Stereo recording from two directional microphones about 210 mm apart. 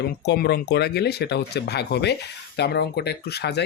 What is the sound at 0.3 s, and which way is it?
Speech, 50° left (ahead or behind).